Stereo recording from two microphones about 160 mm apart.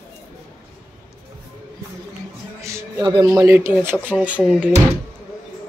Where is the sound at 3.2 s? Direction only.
20° right (ahead or behind).